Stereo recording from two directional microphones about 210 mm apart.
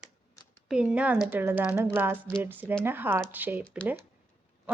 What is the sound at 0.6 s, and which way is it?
Speech, 5° right (ahead or behind).